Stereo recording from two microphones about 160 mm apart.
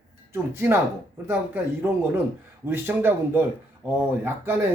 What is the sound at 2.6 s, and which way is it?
Speech, 15° right (ahead or behind).